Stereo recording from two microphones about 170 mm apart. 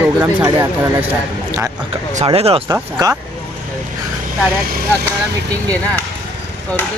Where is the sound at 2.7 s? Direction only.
20° right (ahead or behind).